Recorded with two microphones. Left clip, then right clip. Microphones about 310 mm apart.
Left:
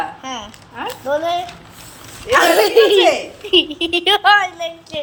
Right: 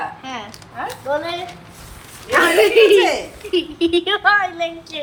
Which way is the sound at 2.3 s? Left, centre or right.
Centre.